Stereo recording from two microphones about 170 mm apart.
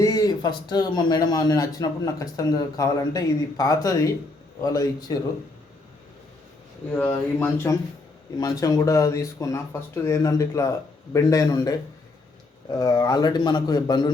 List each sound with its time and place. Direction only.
0.0 s a man's voice: 20° left (ahead or behind)
6.9 s a man's voice: 15° left (ahead or behind)